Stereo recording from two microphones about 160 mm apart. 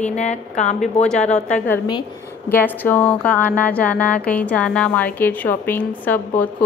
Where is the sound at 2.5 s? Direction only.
10° left (ahead or behind).